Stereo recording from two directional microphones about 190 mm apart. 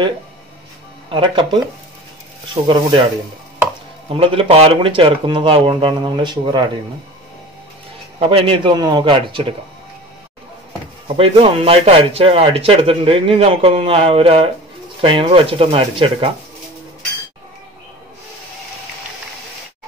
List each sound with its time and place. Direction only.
1.1 s a man's voice: 25° right (ahead or behind)
2.6 s a man's voice: 25° right (ahead or behind)
4.1 s a man's voice: 30° right (ahead or behind)
8.2 s a man's voice: 30° right (ahead or behind)
11.1 s a man's voice: 30° right (ahead or behind)